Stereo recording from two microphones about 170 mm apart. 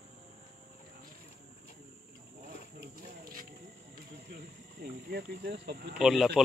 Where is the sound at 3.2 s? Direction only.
55° right (ahead or behind).